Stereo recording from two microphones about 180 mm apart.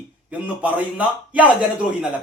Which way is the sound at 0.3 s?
10° right (ahead or behind).